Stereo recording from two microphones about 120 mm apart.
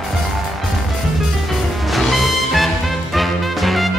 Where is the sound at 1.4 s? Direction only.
Centre (ahead or behind).